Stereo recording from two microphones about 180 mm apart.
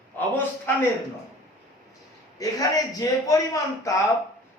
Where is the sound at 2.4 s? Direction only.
20° left (ahead or behind).